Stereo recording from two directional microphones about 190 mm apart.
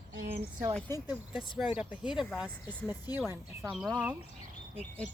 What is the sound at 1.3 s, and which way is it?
Speech, centre (ahead or behind).